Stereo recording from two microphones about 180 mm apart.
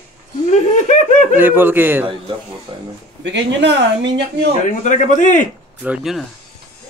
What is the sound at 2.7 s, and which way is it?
Speech, 30° right (ahead or behind).